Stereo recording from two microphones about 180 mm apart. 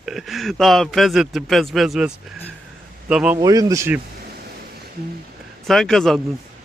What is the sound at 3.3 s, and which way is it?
Speech, 20° right (ahead or behind).